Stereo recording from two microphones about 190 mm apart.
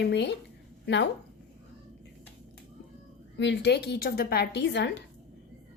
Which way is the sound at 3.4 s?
65° left (ahead or behind).